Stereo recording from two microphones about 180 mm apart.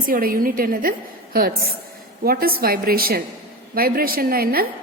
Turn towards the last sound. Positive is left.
turn(degrees=-55)  # may be behind; listen again after turning